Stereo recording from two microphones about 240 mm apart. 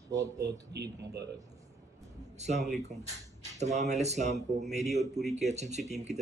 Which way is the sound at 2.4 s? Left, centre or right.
Right.